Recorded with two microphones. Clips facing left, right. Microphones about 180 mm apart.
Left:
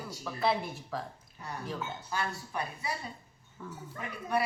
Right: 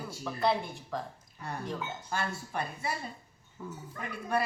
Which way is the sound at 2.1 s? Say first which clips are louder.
Right 1 dB; 50° right (ahead or behind).